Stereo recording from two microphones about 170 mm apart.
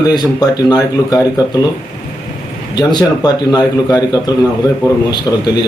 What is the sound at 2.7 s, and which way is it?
Speech, 25° left (ahead or behind).